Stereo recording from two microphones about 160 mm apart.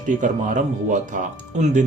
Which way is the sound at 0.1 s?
50° right (ahead or behind).